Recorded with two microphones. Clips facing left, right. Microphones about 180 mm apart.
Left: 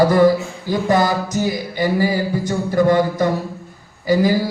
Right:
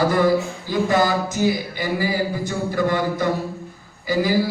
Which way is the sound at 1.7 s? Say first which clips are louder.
Left 4 dB; 45° left (ahead or behind).